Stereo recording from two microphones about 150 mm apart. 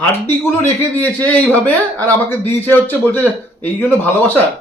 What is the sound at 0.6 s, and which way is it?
A man's voice, 10° left (ahead or behind).